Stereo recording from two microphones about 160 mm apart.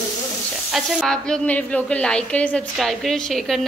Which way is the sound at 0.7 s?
Centre (ahead or behind).